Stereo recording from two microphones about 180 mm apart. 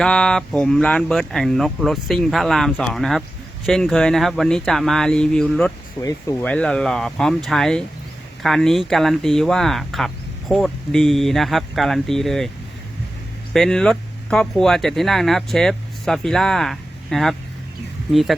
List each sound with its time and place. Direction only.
0.0 s speech: 5° left (ahead or behind)
6.1 s speech: 15° left (ahead or behind)
6.5 s speech: 5° left (ahead or behind)
13.5 s speech: 5° left (ahead or behind)